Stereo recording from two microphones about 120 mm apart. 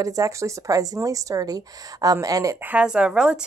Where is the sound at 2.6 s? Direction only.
10° right (ahead or behind).